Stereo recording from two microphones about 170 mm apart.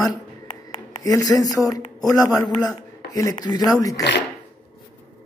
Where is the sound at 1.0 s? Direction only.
20° left (ahead or behind).